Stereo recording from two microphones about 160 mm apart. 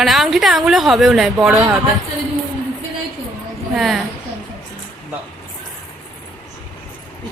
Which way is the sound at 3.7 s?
Centre (ahead or behind).